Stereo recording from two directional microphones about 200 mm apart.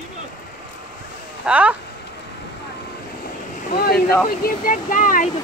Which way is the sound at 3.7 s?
50° left (ahead or behind).